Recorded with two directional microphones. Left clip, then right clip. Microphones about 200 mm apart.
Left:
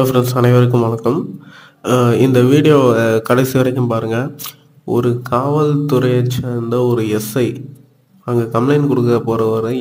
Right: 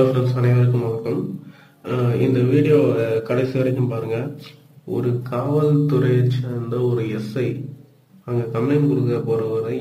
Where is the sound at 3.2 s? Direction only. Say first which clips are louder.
Left 7 dB; 45° left (ahead or behind).